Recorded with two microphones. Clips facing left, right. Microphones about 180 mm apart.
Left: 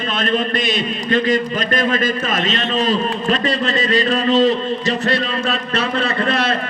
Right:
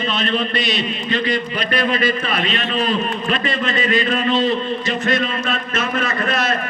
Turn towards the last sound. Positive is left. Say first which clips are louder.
# left 2 dB
turn(degrees=30)  # may be behind; listen again after turning